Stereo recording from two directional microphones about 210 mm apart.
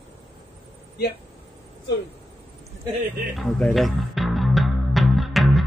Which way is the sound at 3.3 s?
Centre (ahead or behind).